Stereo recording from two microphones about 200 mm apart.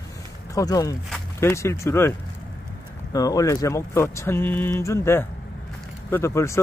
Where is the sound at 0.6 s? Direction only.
15° left (ahead or behind).